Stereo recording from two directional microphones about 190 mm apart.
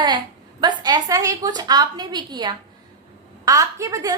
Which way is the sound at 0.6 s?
20° right (ahead or behind).